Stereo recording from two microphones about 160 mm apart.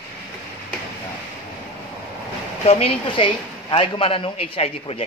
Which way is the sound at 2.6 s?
35° left (ahead or behind).